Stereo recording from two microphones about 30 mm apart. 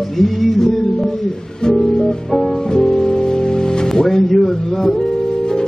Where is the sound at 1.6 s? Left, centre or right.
Left.